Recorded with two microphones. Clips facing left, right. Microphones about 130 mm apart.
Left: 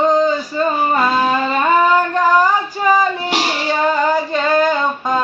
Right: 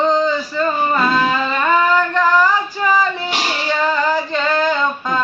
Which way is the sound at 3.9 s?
45° left (ahead or behind).